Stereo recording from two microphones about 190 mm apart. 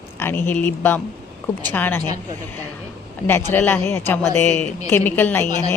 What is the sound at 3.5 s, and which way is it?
Speech, 10° left (ahead or behind).